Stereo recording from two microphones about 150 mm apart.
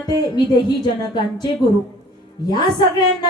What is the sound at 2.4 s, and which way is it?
Speech, 30° left (ahead or behind).